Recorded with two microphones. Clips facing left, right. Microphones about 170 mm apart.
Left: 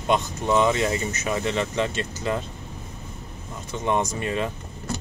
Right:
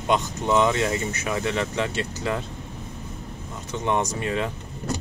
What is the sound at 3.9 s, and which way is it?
Speech, 15° left (ahead or behind).